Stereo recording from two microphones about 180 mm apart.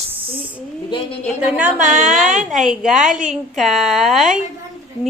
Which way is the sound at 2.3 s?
45° right (ahead or behind).